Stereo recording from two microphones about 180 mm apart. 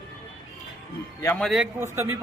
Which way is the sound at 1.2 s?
15° left (ahead or behind).